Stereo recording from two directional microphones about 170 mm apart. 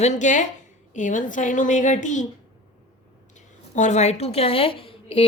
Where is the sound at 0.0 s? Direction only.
45° left (ahead or behind).